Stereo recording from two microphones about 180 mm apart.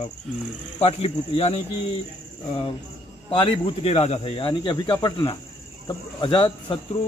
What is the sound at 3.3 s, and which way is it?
Speech, 30° left (ahead or behind).